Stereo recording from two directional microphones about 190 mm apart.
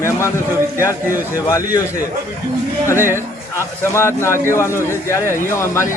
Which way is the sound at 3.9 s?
15° left (ahead or behind).